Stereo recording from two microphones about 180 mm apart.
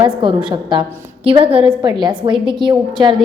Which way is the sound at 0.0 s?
25° right (ahead or behind).